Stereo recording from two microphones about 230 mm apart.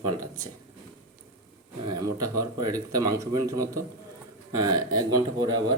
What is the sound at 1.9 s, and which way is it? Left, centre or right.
Speech, centre.